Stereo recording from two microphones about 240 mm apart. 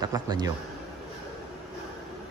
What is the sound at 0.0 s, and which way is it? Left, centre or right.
Speech, centre.